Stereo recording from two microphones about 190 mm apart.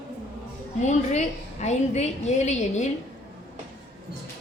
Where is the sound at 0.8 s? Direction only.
35° left (ahead or behind).